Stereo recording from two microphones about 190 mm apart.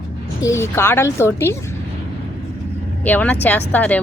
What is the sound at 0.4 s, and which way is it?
A woman's voice, 15° left (ahead or behind).